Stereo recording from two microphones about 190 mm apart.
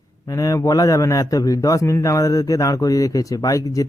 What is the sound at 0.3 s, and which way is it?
A man's voice, 20° left (ahead or behind).